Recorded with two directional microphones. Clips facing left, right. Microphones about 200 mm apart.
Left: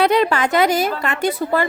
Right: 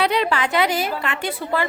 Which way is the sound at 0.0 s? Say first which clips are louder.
Left 4 dB; 45° left (ahead or behind).